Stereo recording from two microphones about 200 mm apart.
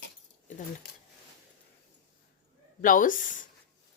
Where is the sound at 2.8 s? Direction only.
40° left (ahead or behind).